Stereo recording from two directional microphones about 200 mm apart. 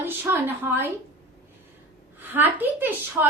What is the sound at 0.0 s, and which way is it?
Speech, 10° right (ahead or behind).